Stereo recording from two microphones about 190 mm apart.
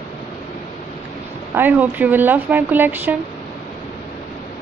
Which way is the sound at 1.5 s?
10° right (ahead or behind).